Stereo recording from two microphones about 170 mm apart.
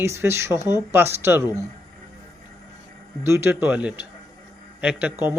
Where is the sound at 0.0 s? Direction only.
15° right (ahead or behind).